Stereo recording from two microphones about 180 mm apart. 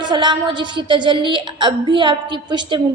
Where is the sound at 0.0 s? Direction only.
25° right (ahead or behind).